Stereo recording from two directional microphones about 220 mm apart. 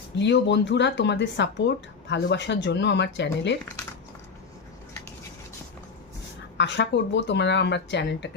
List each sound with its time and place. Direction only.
0.2 s speech: 50° left (ahead or behind)
6.6 s speech: 55° left (ahead or behind)